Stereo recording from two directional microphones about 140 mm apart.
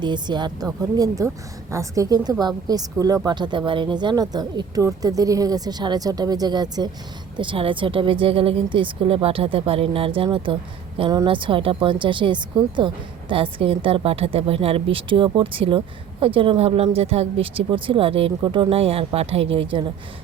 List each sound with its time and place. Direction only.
0.0 s speech: 30° right (ahead or behind)